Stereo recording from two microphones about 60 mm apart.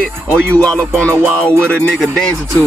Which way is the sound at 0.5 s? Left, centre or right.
Centre.